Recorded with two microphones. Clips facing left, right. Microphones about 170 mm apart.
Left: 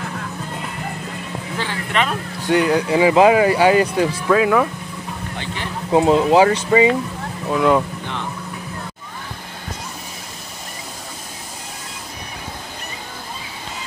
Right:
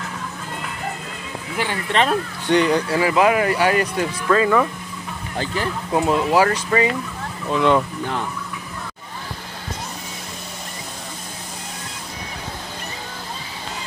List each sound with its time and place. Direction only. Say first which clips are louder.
1.9 s speech: right 2 dB; 35° right (ahead or behind)
2.4 s speech: left 1 dB; 5° left (ahead or behind)
2.9 s speech: left 4 dB; 20° left (ahead or behind)
4.3 s speech: even; 5° left (ahead or behind)
5.9 s speech: left 6 dB; 25° left (ahead or behind)
7.4 s speech: left 1 dB; 5° left (ahead or behind)